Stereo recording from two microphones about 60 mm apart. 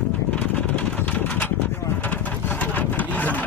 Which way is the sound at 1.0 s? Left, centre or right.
Left.